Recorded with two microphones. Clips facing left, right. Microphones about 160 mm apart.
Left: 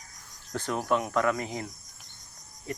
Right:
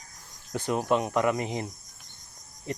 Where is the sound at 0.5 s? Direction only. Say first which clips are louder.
Right 2 dB; 15° right (ahead or behind).